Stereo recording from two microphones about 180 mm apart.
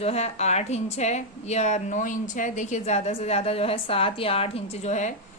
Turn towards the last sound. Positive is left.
turn(degrees=40)  # may be behind; listen again after turning